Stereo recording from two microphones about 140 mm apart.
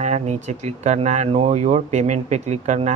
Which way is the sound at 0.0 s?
55° right (ahead or behind).